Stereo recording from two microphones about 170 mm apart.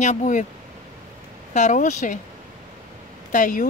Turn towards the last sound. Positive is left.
turn(degrees=50)  # may be behind; listen again after turning